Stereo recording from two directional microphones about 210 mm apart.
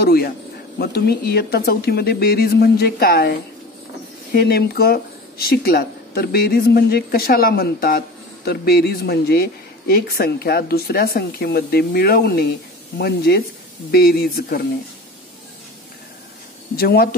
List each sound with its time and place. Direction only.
0.0 s speech: 45° left (ahead or behind)
16.7 s speech: 45° left (ahead or behind)